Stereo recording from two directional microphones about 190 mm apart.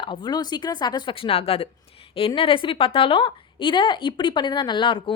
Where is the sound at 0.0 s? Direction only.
25° left (ahead or behind).